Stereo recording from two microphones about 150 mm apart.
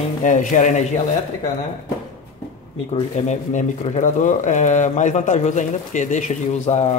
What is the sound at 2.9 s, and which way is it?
Speech, 50° left (ahead or behind).